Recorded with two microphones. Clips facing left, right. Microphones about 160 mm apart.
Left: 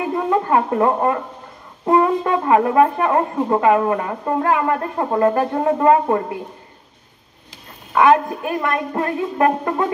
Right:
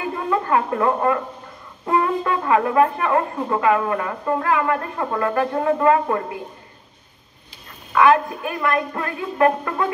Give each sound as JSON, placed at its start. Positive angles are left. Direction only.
{"t": 0.1, "sound": "speech", "side_deg": 35}
{"t": 2.2, "sound": "speech", "side_deg": 35}
{"t": 7.9, "sound": "speech", "side_deg": 35}